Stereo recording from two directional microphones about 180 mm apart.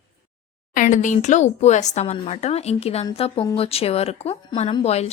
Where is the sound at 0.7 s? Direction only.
45° left (ahead or behind).